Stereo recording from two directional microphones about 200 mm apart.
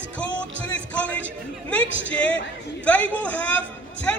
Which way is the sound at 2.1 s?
5° left (ahead or behind).